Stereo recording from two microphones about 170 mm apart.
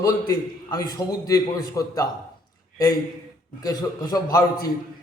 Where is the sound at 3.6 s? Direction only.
20° left (ahead or behind).